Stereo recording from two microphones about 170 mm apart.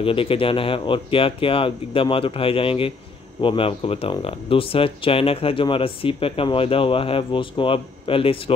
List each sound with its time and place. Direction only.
0.0 s speech: 30° left (ahead or behind)